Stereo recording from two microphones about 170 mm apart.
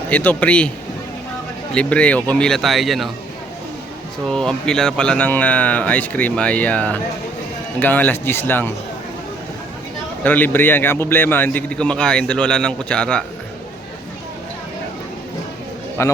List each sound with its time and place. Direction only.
0.1 s a man's voice: 10° left (ahead or behind)
1.7 s speech: 5° left (ahead or behind)
4.3 s a man's voice: 5° left (ahead or behind)
10.2 s a man's voice: 10° left (ahead or behind)
16.0 s a man's voice: 15° left (ahead or behind)